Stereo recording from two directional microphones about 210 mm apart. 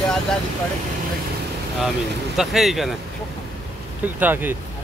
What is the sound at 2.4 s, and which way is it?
Speech, centre (ahead or behind).